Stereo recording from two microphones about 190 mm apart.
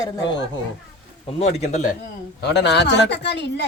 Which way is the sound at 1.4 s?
35° left (ahead or behind).